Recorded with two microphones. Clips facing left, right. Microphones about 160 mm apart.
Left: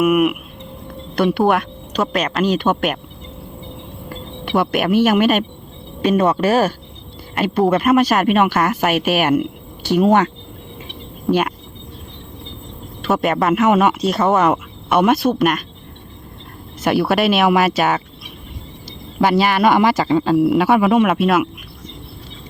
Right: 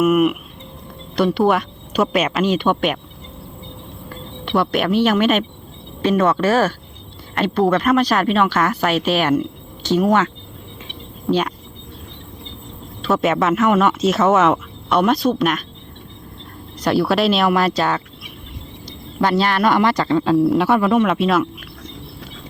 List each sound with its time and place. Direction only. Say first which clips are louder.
0.0 s speech: even; centre (ahead or behind)
4.1 s music: left 1 dB; 5° left (ahead or behind)
6.0 s speech: left 1 dB; 15° left (ahead or behind)
11.3 s speech: left 2 dB; 10° left (ahead or behind)
13.2 s speech: right 1 dB; centre (ahead or behind)
13.7 s speech: left 2 dB; 15° left (ahead or behind)
14.0 s speech: right 1 dB; centre (ahead or behind)
16.8 s speech: left 1 dB; centre (ahead or behind)
18.9 s speech: left 2 dB; 10° left (ahead or behind)